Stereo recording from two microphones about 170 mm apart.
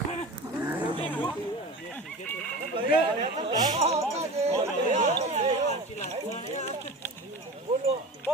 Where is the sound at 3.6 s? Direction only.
40° right (ahead or behind).